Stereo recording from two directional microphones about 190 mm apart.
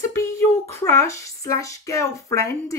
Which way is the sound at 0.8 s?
15° left (ahead or behind).